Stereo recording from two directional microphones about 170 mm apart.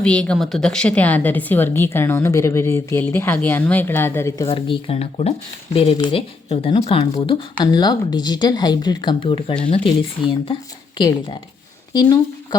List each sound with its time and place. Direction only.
0.0 s speech: 5° left (ahead or behind)
4.4 s speech: 35° left (ahead or behind)